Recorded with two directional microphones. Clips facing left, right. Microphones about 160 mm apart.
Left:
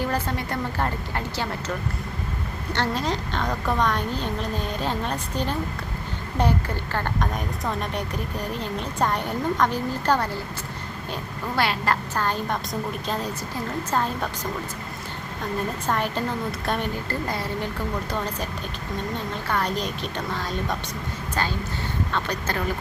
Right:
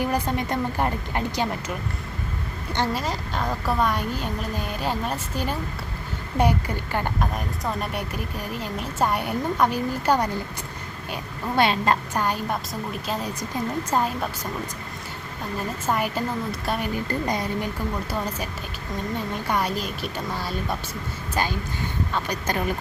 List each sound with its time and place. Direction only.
0.0 s a woman's voice: 15° right (ahead or behind)
2.7 s a woman's voice: 5° right (ahead or behind)
11.5 s a woman's voice: 20° right (ahead or behind)
15.9 s a woman's voice: 10° right (ahead or behind)
17.1 s a woman's voice: 15° right (ahead or behind)
19.5 s a woman's voice: 10° right (ahead or behind)
22.1 s a woman's voice: 15° right (ahead or behind)